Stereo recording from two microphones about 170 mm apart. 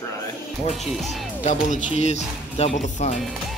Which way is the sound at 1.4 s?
45° left (ahead or behind).